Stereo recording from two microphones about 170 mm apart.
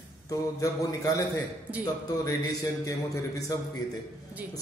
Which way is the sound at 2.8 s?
20° left (ahead or behind).